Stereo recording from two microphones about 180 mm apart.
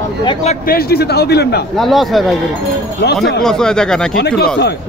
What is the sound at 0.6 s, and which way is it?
Speech, 60° left (ahead or behind).